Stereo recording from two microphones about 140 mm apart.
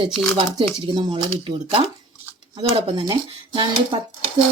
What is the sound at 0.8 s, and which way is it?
Speech, 35° right (ahead or behind).